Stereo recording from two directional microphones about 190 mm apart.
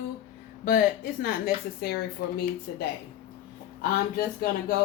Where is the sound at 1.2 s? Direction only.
50° left (ahead or behind).